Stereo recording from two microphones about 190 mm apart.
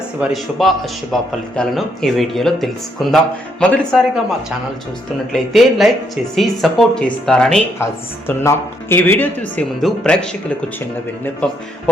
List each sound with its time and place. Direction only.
0.2 s a man's voice: centre (ahead or behind)
11.4 s speech: 5° left (ahead or behind)